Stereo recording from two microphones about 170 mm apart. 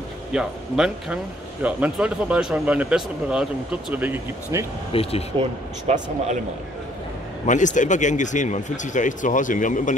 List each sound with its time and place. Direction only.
0.3 s speech: 5° right (ahead or behind)
4.9 s speech: 35° left (ahead or behind)
5.4 s speech: 40° right (ahead or behind)
7.4 s speech: 45° left (ahead or behind)